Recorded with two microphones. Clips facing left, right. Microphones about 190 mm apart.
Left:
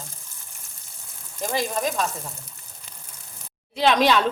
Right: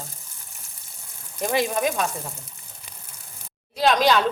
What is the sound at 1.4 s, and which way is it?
Speech, 10° right (ahead or behind).